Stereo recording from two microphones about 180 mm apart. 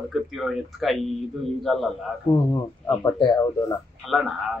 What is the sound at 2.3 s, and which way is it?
Speech, 20° left (ahead or behind).